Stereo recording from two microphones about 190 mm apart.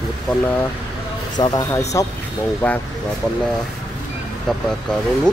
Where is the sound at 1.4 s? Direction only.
20° left (ahead or behind).